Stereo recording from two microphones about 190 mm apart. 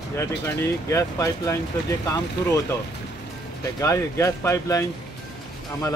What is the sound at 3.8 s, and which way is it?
Speech, 15° left (ahead or behind).